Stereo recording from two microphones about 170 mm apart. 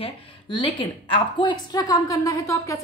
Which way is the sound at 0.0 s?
30° left (ahead or behind).